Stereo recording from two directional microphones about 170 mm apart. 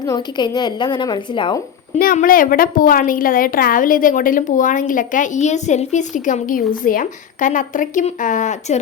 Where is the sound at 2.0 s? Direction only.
55° left (ahead or behind).